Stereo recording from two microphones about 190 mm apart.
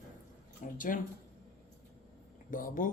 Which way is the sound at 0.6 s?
45° left (ahead or behind).